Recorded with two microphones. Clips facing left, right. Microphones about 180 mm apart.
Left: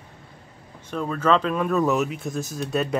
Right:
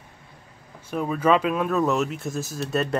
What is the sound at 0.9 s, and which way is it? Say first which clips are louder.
A man's voice: right 1 dB; 10° right (ahead or behind).